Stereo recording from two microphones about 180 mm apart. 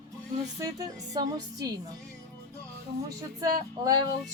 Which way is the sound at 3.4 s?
20° right (ahead or behind).